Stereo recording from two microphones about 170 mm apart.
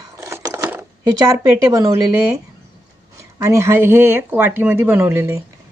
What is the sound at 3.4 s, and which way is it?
Speech, 15° right (ahead or behind).